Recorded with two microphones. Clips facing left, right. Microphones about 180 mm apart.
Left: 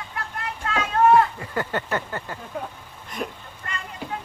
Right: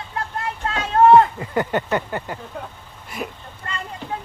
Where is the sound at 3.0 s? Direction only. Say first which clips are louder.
Right 1 dB; 5° right (ahead or behind).